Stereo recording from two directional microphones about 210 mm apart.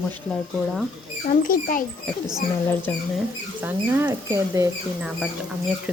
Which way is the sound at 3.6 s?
10° right (ahead or behind).